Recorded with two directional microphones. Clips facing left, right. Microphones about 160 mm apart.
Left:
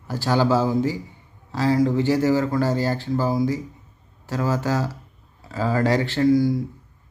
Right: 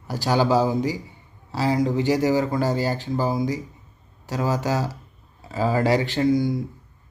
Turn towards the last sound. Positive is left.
turn(degrees=-20)  # may be behind; listen again after turning